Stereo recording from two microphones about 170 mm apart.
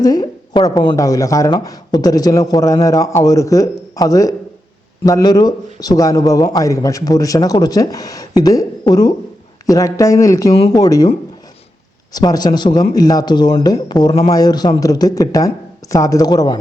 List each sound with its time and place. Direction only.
0.0 s a man's voice: 25° left (ahead or behind)
12.1 s a man's voice: 25° left (ahead or behind)